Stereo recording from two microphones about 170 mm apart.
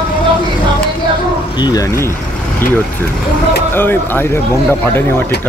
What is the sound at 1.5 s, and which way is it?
Speech, 25° left (ahead or behind).